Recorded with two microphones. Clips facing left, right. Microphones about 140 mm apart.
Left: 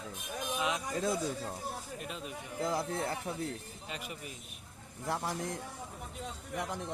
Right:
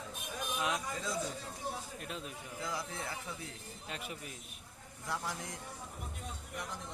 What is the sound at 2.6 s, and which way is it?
Speech, 50° left (ahead or behind).